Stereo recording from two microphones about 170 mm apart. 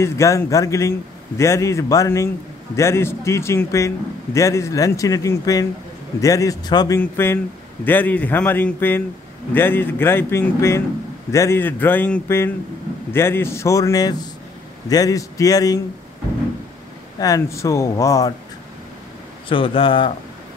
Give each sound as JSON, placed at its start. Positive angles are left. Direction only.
{"t": 0.0, "sound": "a man's voice", "side_deg": 15}
{"t": 17.2, "sound": "speech", "side_deg": 20}
{"t": 19.5, "sound": "speech", "side_deg": 30}